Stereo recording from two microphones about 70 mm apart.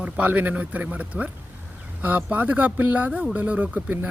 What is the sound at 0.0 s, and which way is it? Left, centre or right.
Speech, right.